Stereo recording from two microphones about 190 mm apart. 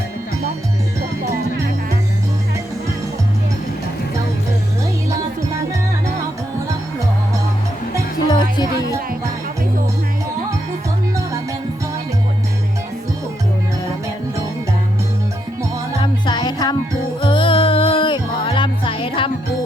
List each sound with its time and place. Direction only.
8.3 s music: 25° left (ahead or behind)
16.0 s music: 25° left (ahead or behind)